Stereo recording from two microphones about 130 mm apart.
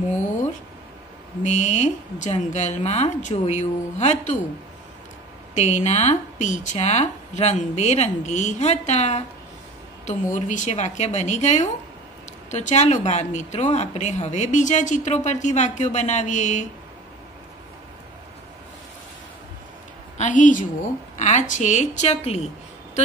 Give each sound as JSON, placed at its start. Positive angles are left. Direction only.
{"t": 1.4, "sound": "speech", "side_deg": 65}
{"t": 5.5, "sound": "speech", "side_deg": 65}
{"t": 20.2, "sound": "a woman's voice", "side_deg": 80}
{"t": 21.2, "sound": "speech", "side_deg": 65}